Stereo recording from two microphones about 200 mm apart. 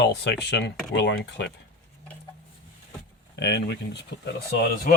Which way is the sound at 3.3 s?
60° left (ahead or behind).